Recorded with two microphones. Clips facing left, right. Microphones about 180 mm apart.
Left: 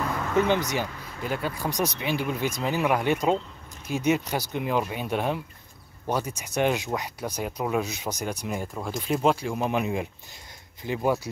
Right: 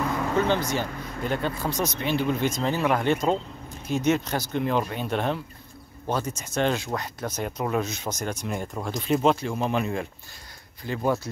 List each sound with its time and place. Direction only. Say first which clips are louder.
0.5 s speech: even; 15° left (ahead or behind)